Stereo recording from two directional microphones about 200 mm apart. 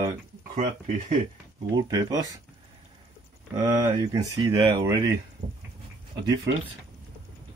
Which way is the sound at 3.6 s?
15° right (ahead or behind).